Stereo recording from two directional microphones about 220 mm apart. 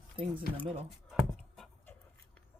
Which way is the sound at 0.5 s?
5° left (ahead or behind).